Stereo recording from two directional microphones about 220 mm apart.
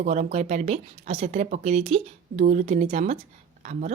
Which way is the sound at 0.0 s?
35° right (ahead or behind).